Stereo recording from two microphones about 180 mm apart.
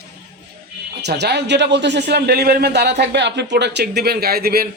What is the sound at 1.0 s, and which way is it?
A man's voice, 70° right (ahead or behind).